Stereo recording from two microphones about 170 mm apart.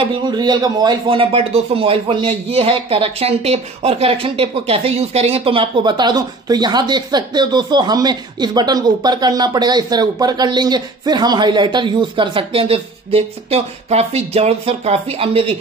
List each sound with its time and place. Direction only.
0.1 s speech: 25° right (ahead or behind)